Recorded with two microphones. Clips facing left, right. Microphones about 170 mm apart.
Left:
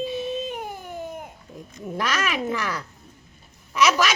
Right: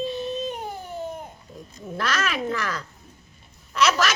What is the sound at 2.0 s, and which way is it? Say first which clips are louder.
A woman's voice: left 1 dB; 15° left (ahead or behind).